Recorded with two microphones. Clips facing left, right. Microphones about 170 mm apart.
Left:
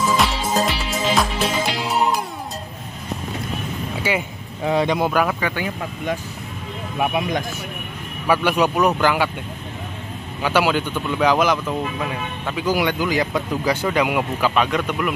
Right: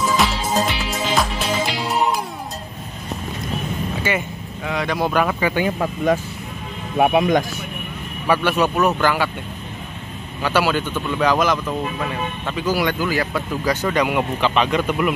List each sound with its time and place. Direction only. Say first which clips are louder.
0.2 s music: even; centre (ahead or behind)
4.1 s speech: left 1 dB; 10° left (ahead or behind)
4.6 s speech: left 3 dB; 25° left (ahead or behind)
5.5 s speech: right 5 dB; 5° right (ahead or behind)
7.0 s speech: right 6 dB; 50° right (ahead or behind)
8.3 s speech: even; 15° left (ahead or behind)
10.4 s speech: even; 15° left (ahead or behind); by 15.1 s 5° right (ahead or behind)